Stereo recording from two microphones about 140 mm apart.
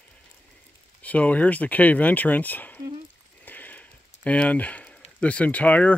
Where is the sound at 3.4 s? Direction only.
10° left (ahead or behind).